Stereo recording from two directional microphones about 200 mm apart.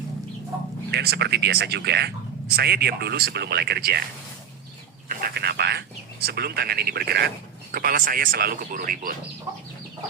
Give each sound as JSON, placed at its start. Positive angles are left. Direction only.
{"t": 0.9, "sound": "speech", "side_deg": -55}
{"t": 5.0, "sound": "speech", "side_deg": -50}